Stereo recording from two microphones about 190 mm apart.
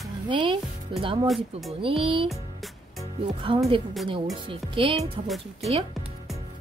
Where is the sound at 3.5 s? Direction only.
25° right (ahead or behind).